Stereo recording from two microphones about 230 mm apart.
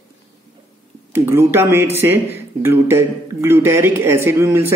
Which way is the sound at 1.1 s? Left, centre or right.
Centre.